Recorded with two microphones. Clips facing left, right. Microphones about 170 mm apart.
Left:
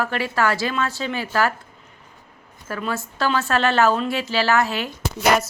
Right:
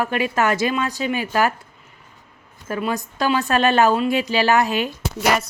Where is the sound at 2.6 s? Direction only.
15° right (ahead or behind).